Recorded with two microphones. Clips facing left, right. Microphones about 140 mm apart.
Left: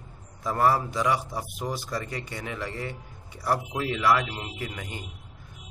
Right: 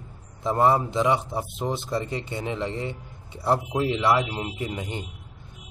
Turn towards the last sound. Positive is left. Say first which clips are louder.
# right 5 dB
turn(degrees=-25)  # may be behind; listen again after turning